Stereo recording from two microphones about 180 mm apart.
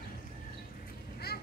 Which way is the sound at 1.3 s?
60° left (ahead or behind).